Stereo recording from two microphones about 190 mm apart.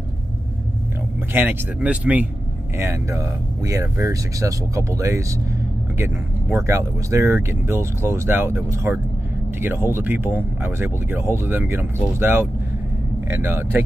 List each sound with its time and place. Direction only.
1.3 s speech: 10° right (ahead or behind)
6.5 s speech: 15° right (ahead or behind)